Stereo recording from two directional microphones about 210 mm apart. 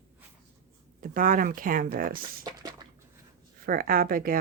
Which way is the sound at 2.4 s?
20° right (ahead or behind).